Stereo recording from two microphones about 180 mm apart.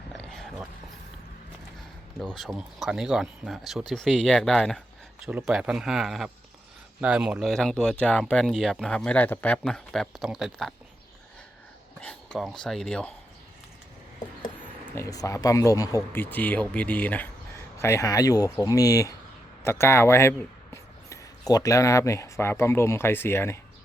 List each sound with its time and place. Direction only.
0.1 s a sound: centre (ahead or behind)
2.4 s speech: centre (ahead or behind)
11.9 s speech: 5° left (ahead or behind)
14.9 s speech: 20° left (ahead or behind)